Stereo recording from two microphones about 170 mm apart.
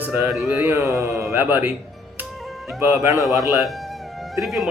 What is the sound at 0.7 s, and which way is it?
Speech, 20° right (ahead or behind).